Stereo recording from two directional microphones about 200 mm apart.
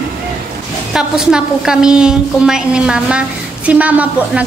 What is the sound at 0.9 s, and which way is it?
A woman's voice, 5° right (ahead or behind).